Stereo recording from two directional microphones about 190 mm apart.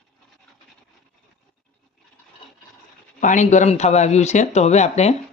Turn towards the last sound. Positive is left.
turn(degrees=35)  # may be behind; listen again after turning